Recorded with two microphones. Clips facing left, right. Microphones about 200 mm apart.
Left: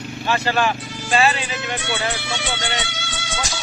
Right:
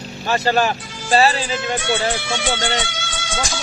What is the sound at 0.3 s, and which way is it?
Speech, 40° right (ahead or behind).